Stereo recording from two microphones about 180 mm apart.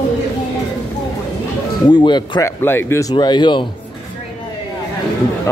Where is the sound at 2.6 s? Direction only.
15° left (ahead or behind).